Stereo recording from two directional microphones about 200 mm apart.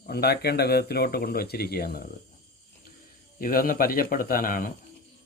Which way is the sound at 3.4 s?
45° left (ahead or behind).